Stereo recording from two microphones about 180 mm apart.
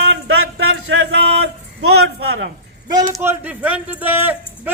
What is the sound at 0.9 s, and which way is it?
Speech, 90° right.